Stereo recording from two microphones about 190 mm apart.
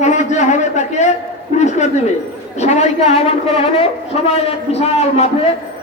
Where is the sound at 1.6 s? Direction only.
35° left (ahead or behind).